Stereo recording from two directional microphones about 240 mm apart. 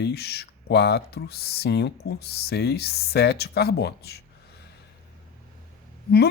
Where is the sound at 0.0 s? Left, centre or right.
Left.